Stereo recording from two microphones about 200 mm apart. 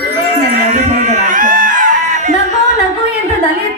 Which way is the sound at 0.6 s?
35° right (ahead or behind).